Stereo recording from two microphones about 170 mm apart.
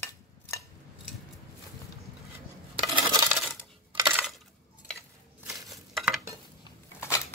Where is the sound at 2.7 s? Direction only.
30° right (ahead or behind).